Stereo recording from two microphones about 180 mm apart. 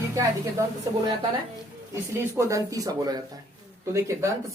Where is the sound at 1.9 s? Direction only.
15° right (ahead or behind).